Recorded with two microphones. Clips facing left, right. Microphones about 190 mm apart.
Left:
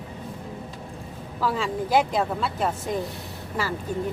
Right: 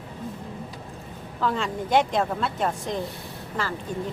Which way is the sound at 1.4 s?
5° left (ahead or behind).